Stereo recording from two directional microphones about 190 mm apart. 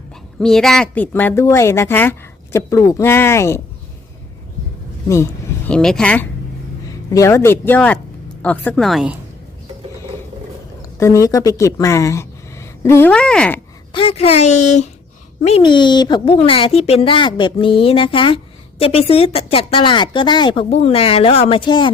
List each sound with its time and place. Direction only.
0.3 s a woman's voice: centre (ahead or behind)
5.0 s speech: 15° left (ahead or behind)
7.1 s a woman's voice: 15° left (ahead or behind); by 9.1 s centre (ahead or behind)
10.9 s a woman's voice: 15° left (ahead or behind)
13.9 s speech: 30° left (ahead or behind)